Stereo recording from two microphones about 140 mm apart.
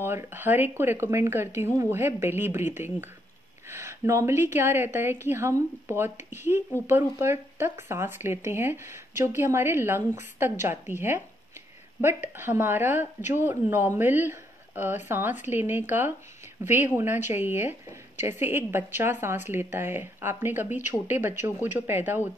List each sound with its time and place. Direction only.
0.0 s a woman's voice: 15° right (ahead or behind)
12.4 s a woman's voice: 15° right (ahead or behind)